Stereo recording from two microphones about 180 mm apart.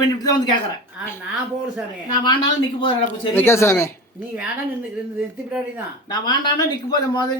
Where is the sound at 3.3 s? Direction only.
15° left (ahead or behind).